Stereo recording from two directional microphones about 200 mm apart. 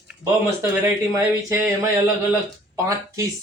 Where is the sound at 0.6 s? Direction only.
10° right (ahead or behind).